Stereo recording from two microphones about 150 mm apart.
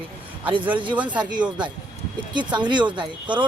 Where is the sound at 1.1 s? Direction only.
30° right (ahead or behind).